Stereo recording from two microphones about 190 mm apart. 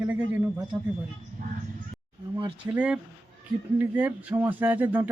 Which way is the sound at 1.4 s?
45° right (ahead or behind).